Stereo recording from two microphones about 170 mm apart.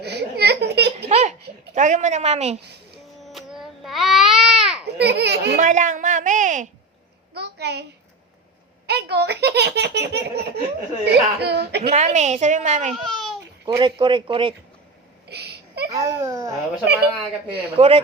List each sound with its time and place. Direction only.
0.0 s a sound: 75° right (ahead or behind)
0.9 s a sound: 35° right (ahead or behind)
3.2 s baby cry: centre (ahead or behind)
4.9 s speech: 75° right (ahead or behind)
5.5 s a woman's voice: 45° right (ahead or behind)
7.3 s a sound: 75° right (ahead or behind)
8.9 s a child's voice: 75° right (ahead or behind)
11.0 s speech: 70° right (ahead or behind)
11.8 s a woman's voice: 35° right (ahead or behind)
12.9 s babbling: centre (ahead or behind)
13.7 s a man's voice: 30° right (ahead or behind)
15.3 s a sound: 70° right (ahead or behind)
15.9 s speech: 20° right (ahead or behind)
17.7 s a man's voice: 35° right (ahead or behind)